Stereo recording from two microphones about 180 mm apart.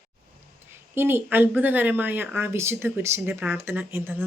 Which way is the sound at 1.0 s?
10° right (ahead or behind).